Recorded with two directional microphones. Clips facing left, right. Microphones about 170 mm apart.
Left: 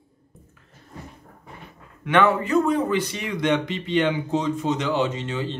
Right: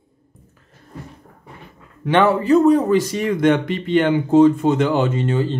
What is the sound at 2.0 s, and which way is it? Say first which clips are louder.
Speech: right 5 dB; 30° right (ahead or behind).